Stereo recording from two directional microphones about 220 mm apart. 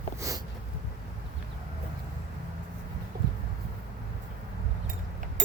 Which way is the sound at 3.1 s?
45° right (ahead or behind).